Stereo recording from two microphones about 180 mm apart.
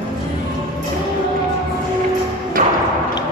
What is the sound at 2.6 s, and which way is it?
Thump, 45° right (ahead or behind).